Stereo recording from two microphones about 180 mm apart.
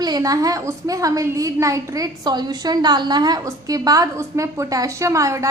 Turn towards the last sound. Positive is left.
turn(degrees=-15)  # may be behind; listen again after turning